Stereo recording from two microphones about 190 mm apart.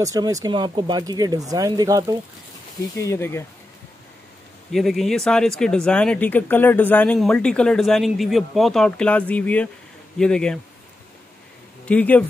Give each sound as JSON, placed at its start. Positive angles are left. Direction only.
{"t": 0.0, "sound": "speech", "side_deg": -15}
{"t": 3.0, "sound": "speech", "side_deg": 15}
{"t": 4.7, "sound": "speech", "side_deg": 0}
{"t": 11.8, "sound": "speech", "side_deg": 5}